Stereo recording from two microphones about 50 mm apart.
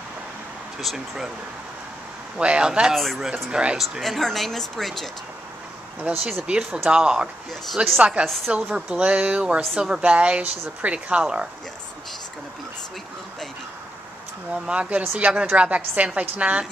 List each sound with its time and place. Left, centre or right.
0.7 s speech: centre
2.3 s speech: right
2.9 s a woman's voice: centre
3.4 s speech: centre
4.0 s a woman's voice: centre
6.4 s speech: centre
7.7 s a woman's voice: centre
8.0 s speech: right
8.9 s speech: right
14.5 s speech: right